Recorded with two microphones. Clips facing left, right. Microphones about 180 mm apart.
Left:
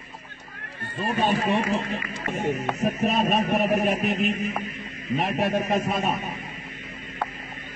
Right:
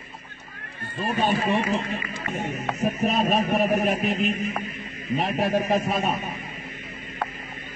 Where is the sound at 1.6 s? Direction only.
30° left (ahead or behind).